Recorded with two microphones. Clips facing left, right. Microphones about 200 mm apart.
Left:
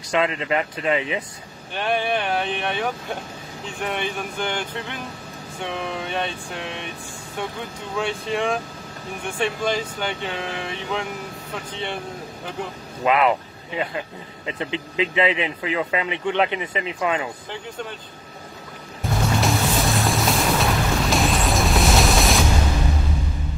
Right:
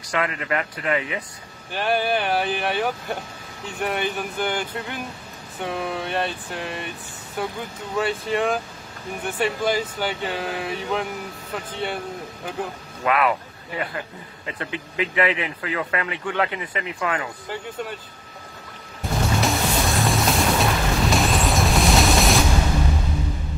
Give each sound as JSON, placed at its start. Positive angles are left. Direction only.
{"t": 0.1, "sound": "speech", "side_deg": 20}
{"t": 1.7, "sound": "speech", "side_deg": -5}
{"t": 13.0, "sound": "speech", "side_deg": 20}
{"t": 17.5, "sound": "speech", "side_deg": -5}
{"t": 19.4, "sound": "music", "side_deg": 0}